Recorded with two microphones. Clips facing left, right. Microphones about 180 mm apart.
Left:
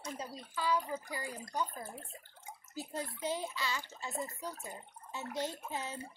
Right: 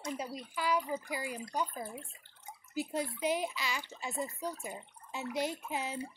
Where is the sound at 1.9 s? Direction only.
45° left (ahead or behind).